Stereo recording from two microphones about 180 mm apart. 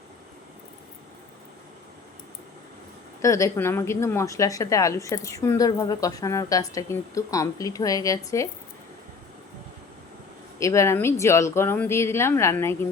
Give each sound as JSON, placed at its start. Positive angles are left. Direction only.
{"t": 3.2, "sound": "a woman's voice", "side_deg": 15}
{"t": 10.6, "sound": "a woman's voice", "side_deg": 15}